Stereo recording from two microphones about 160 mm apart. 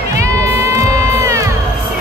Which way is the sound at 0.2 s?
20° right (ahead or behind).